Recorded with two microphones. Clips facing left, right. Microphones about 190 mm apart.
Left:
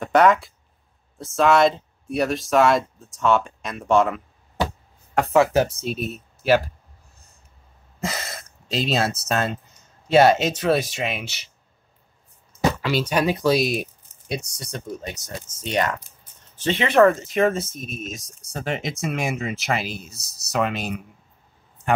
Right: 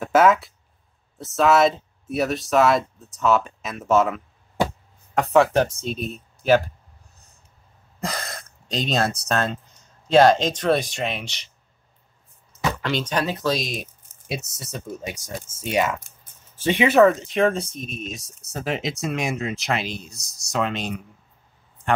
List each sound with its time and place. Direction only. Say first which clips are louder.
0.0 s speech: even; 5° right (ahead or behind)
8.0 s a sound: even; 5° left (ahead or behind)
9.2 s speech: even; 5° left (ahead or behind)
12.8 s speech: left 1 dB; 10° left (ahead or behind)
14.2 s speech: left 1 dB; 5° right (ahead or behind)